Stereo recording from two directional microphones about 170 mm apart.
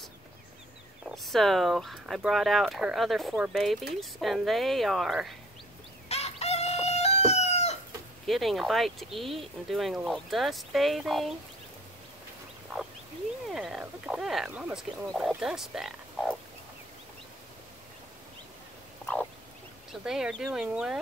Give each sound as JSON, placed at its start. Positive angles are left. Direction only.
{"t": 1.0, "sound": "speech", "side_deg": 0}
{"t": 6.0, "sound": "chicken", "side_deg": 40}
{"t": 8.3, "sound": "speech", "side_deg": 0}
{"t": 13.5, "sound": "speech", "side_deg": -5}
{"t": 19.9, "sound": "speech", "side_deg": -5}